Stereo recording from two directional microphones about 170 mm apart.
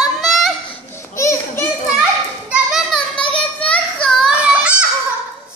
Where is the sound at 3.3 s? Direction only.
5° left (ahead or behind).